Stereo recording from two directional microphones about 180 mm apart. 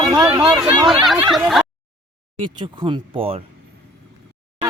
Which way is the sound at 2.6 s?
30° right (ahead or behind).